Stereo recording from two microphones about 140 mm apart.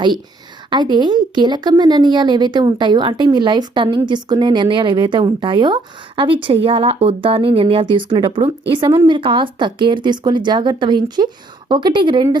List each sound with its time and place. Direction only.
0.7 s speech: 30° right (ahead or behind)